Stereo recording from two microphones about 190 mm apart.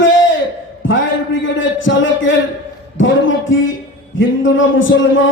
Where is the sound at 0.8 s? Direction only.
90° left.